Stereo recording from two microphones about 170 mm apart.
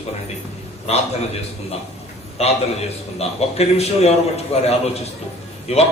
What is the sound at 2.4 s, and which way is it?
A man's voice, 35° left (ahead or behind).